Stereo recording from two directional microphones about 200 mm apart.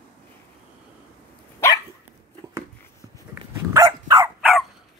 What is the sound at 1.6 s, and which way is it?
Dog, 15° left (ahead or behind).